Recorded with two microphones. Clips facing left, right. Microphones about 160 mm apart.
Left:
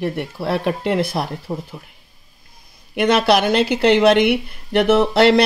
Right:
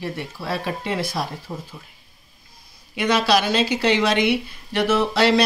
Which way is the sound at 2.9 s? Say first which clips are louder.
Left 4 dB; 60° left (ahead or behind).